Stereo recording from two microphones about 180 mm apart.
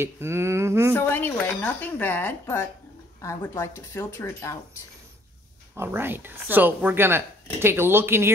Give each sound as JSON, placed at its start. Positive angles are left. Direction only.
{"t": 0.0, "sound": "speech", "side_deg": -15}
{"t": 0.9, "sound": "speech", "side_deg": 10}
{"t": 5.8, "sound": "speech", "side_deg": -10}